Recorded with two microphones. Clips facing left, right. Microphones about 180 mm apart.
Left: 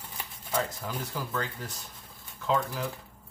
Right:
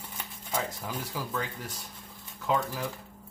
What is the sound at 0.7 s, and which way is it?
Speech, 10° right (ahead or behind).